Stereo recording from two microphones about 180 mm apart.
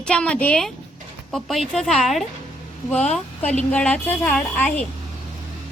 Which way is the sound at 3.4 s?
5° left (ahead or behind).